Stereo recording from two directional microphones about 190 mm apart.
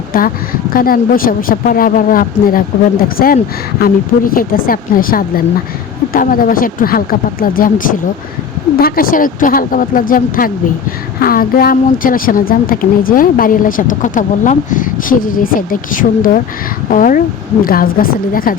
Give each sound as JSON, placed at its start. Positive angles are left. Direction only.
{"t": 0.7, "sound": "a woman's voice", "side_deg": 50}